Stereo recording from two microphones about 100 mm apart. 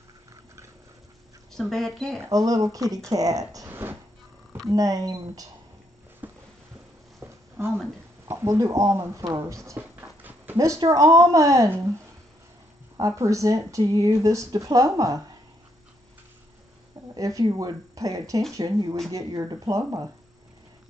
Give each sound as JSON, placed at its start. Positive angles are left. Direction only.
{"t": 1.5, "sound": "speech", "side_deg": 5}
{"t": 2.1, "sound": "speech", "side_deg": -30}
{"t": 3.6, "sound": "a sound", "side_deg": -20}
{"t": 4.6, "sound": "speech", "side_deg": -35}
{"t": 6.2, "sound": "a sound", "side_deg": -15}
{"t": 8.3, "sound": "speech", "side_deg": -30}
{"t": 9.8, "sound": "dog", "side_deg": -20}
{"t": 10.9, "sound": "speech", "side_deg": -30}
{"t": 13.0, "sound": "speech", "side_deg": -30}
{"t": 17.1, "sound": "speech", "side_deg": -35}